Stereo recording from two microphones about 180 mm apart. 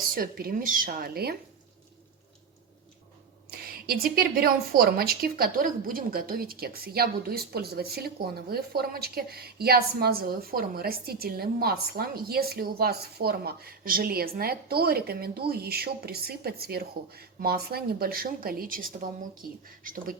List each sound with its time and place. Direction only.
0.1 s a woman's voice: 55° right (ahead or behind)
3.5 s a woman's voice: 55° right (ahead or behind)